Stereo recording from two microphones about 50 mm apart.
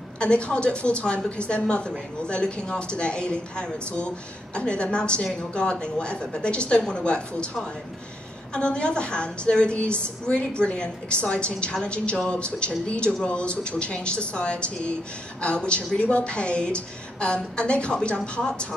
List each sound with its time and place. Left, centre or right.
0.2 s a woman's voice: left
8.5 s a woman's voice: left